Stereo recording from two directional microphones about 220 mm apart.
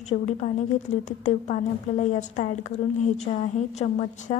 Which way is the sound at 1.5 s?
35° left (ahead or behind).